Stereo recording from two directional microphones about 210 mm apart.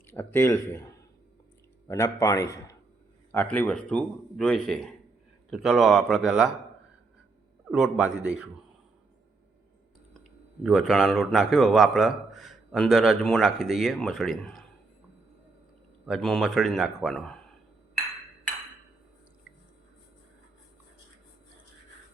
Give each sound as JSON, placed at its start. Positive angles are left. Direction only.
{"t": 0.1, "sound": "a man's voice", "side_deg": 10}
{"t": 1.9, "sound": "a man's voice", "side_deg": 15}
{"t": 7.7, "sound": "a man's voice", "side_deg": -5}
{"t": 10.6, "sound": "a man's voice", "side_deg": 0}
{"t": 16.0, "sound": "a man's voice", "side_deg": 0}